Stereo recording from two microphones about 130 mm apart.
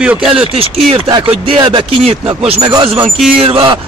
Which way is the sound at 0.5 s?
45° right (ahead or behind).